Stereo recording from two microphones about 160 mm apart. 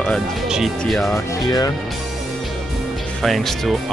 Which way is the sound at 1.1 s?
20° left (ahead or behind).